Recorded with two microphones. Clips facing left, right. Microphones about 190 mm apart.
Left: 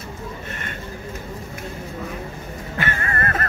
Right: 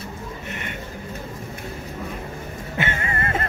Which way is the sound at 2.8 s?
20° right (ahead or behind).